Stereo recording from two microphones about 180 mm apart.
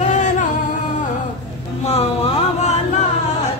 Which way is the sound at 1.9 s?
35° left (ahead or behind).